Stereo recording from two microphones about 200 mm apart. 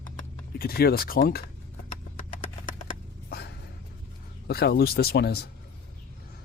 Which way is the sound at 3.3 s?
55° left (ahead or behind).